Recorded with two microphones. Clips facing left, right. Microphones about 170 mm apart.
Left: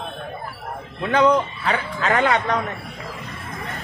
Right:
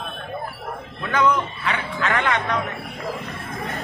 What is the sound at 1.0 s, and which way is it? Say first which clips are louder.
Music: left 3 dB; 30° left (ahead or behind).